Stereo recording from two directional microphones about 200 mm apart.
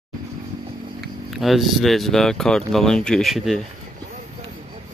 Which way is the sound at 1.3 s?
Centre (ahead or behind).